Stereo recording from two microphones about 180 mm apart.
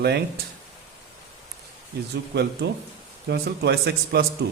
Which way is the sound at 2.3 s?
70° right (ahead or behind).